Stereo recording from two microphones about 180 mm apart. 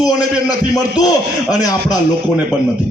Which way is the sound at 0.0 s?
20° left (ahead or behind).